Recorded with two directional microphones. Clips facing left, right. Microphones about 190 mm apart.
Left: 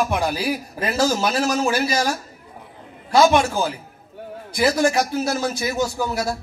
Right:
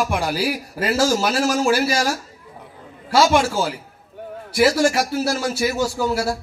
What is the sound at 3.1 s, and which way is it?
Speech, 90° right.